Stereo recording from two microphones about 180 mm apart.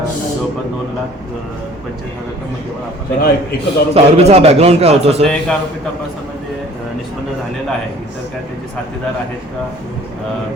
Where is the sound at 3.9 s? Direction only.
35° right (ahead or behind).